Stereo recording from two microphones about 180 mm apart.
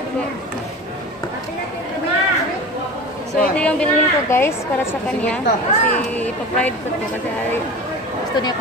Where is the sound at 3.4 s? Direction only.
5° left (ahead or behind).